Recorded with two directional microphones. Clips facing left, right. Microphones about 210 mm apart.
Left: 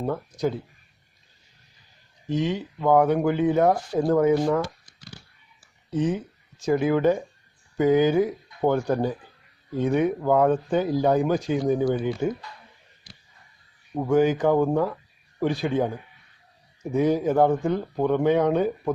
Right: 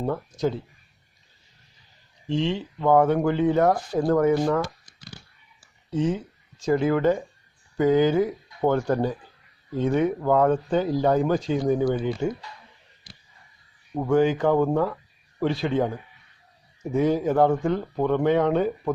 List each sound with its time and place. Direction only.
2.3 s speech: 15° left (ahead or behind)
5.9 s speech: 15° left (ahead or behind)
13.9 s speech: 5° left (ahead or behind)
14.2 s speech: 15° left (ahead or behind)
16.9 s speech: 15° left (ahead or behind)